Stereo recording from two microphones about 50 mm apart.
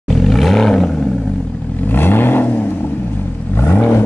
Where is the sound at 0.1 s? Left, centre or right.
Centre.